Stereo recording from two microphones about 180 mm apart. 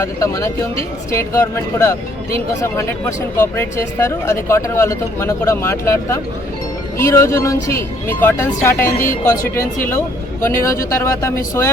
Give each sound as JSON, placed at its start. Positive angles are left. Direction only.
{"t": 0.0, "sound": "speech", "side_deg": 15}
{"t": 10.4, "sound": "speech", "side_deg": 15}